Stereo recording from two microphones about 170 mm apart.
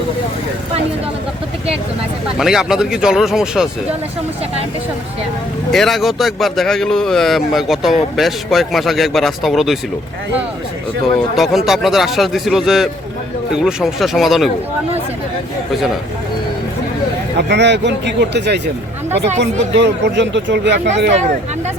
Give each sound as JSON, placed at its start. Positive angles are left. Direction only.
{"t": 2.4, "sound": "speech", "side_deg": -5}
{"t": 5.7, "sound": "speech", "side_deg": 0}
{"t": 11.3, "sound": "speech", "side_deg": 0}
{"t": 17.3, "sound": "speech", "side_deg": -85}